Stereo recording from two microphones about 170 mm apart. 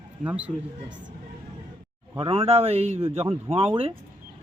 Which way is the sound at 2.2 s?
35° right (ahead or behind).